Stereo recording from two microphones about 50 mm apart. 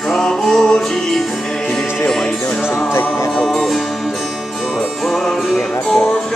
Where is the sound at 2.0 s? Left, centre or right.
Centre.